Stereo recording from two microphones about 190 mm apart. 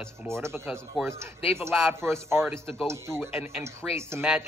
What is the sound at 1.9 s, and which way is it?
Speech, 15° right (ahead or behind).